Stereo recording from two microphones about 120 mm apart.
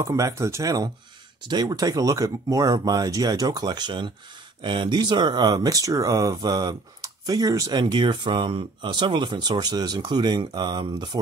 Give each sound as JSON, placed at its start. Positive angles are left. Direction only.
{"t": 0.0, "sound": "speech", "side_deg": -25}